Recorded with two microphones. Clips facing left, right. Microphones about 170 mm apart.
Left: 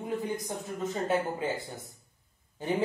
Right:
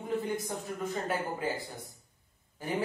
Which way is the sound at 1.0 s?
25° left (ahead or behind).